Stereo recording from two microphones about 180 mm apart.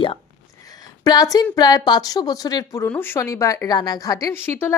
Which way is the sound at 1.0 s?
20° left (ahead or behind).